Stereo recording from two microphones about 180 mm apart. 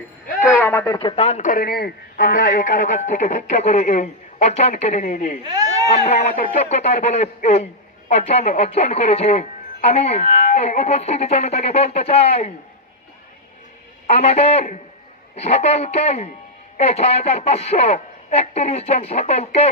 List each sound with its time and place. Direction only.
0.5 s a sound: 10° left (ahead or behind)
0.9 s a man's voice: 30° left (ahead or behind)
5.4 s speech: 20° right (ahead or behind)
5.9 s a woman's voice: 35° left (ahead or behind)
14.1 s a woman's voice: 40° left (ahead or behind)